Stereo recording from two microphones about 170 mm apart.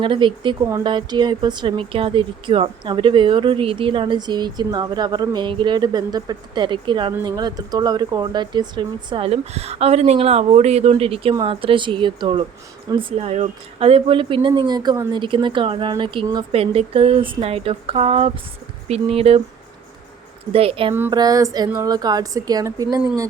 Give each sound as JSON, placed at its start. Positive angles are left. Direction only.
{"t": 0.0, "sound": "speech", "side_deg": -30}
{"t": 20.5, "sound": "speech", "side_deg": -35}
{"t": 21.1, "sound": "speech", "side_deg": -20}